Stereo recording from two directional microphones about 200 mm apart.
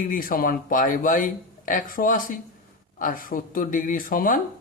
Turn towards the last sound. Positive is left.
turn(degrees=45)  # may be behind; listen again after turning